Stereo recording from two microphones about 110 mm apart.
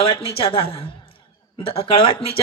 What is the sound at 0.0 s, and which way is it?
Speech, 55° left (ahead or behind).